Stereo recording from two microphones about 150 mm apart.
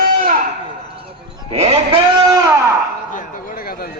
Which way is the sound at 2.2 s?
25° right (ahead or behind).